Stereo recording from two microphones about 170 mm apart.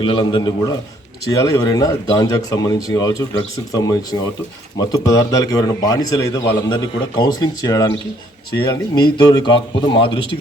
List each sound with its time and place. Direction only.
0.0 s a man's voice: 30° left (ahead or behind)